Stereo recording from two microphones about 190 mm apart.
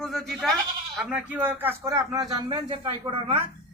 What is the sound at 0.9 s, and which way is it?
A man's voice, 10° right (ahead or behind).